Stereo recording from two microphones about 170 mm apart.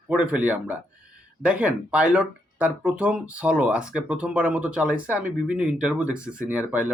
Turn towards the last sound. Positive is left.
turn(degrees=-5)  # may be behind; listen again after turning